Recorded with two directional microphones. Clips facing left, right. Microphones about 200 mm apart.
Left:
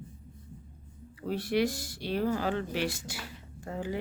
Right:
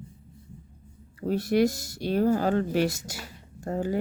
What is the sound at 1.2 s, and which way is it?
Speech, 45° right (ahead or behind).